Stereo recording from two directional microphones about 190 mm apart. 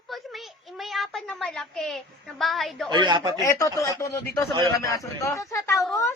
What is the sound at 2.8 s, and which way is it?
Speech, 25° right (ahead or behind).